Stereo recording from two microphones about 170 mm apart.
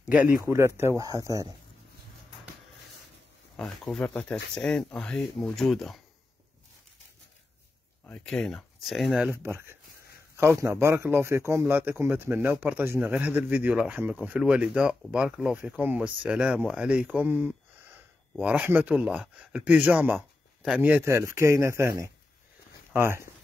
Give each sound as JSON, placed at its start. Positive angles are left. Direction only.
{"t": 0.1, "sound": "speech", "side_deg": -5}
{"t": 3.5, "sound": "speech", "side_deg": 0}
{"t": 8.1, "sound": "speech", "side_deg": 5}